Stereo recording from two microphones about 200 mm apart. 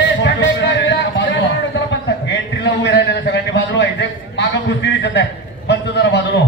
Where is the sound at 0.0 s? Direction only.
60° left (ahead or behind).